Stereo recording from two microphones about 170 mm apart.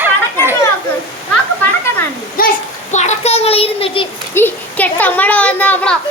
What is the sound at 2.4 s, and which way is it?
Speech, 60° left (ahead or behind).